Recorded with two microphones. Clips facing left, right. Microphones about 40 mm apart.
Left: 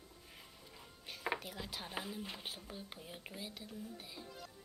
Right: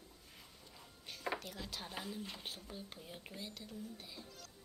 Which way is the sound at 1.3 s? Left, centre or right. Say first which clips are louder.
Even; centre.